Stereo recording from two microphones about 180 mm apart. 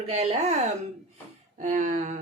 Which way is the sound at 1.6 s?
45° right (ahead or behind).